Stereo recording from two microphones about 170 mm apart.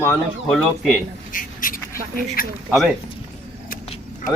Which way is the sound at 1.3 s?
55° left (ahead or behind).